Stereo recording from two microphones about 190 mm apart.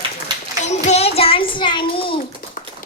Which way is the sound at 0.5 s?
40° left (ahead or behind).